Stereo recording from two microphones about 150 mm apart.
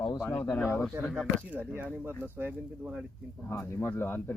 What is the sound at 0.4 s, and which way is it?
Speech, 10° left (ahead or behind).